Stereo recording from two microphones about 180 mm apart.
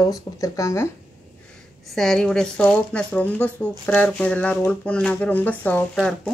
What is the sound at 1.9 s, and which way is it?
Speech, centre (ahead or behind).